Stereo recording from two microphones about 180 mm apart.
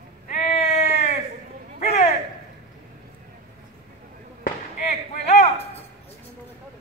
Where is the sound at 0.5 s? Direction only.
35° left (ahead or behind).